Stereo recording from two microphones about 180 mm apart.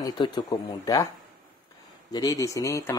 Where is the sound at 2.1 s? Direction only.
20° left (ahead or behind).